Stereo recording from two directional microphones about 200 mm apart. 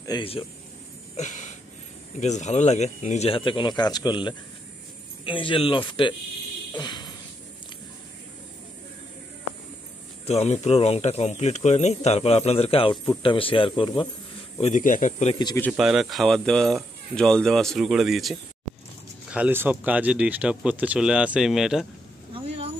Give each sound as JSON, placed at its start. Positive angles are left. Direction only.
{"t": 0.0, "sound": "speech", "side_deg": 25}
{"t": 1.1, "sound": "a sound", "side_deg": 35}
{"t": 2.1, "sound": "speech", "side_deg": 35}
{"t": 6.7, "sound": "a sound", "side_deg": 20}
{"t": 10.2, "sound": "speech", "side_deg": 35}
{"t": 14.6, "sound": "speech", "side_deg": 40}
{"t": 15.3, "sound": "speech", "side_deg": 20}
{"t": 15.7, "sound": "speech", "side_deg": 0}